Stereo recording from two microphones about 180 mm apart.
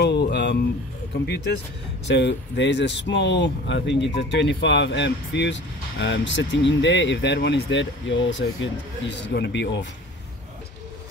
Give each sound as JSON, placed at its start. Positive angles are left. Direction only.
{"t": 0.0, "sound": "a sound", "side_deg": 65}
{"t": 2.0, "sound": "speech", "side_deg": 75}
{"t": 9.3, "sound": "speech", "side_deg": 75}